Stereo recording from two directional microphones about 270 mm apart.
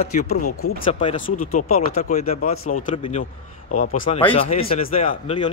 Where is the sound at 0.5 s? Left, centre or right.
Left.